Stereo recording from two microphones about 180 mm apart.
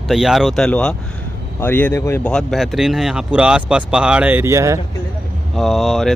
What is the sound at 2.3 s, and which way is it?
Speech, centre (ahead or behind).